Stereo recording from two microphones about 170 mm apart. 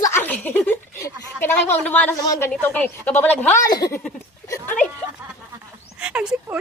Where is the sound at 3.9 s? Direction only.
10° left (ahead or behind).